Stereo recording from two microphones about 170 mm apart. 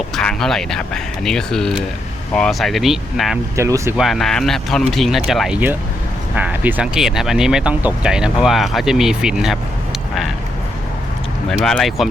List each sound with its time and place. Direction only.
0.2 s speech: 5° left (ahead or behind)
3.5 s speech: 15° right (ahead or behind)
3.9 s speech: centre (ahead or behind)
11.4 s speech: centre (ahead or behind)